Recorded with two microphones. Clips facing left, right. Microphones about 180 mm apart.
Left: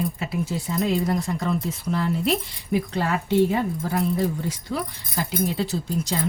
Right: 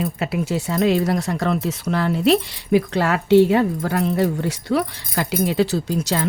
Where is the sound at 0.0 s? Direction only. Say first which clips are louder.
Right 3 dB; 75° right (ahead or behind).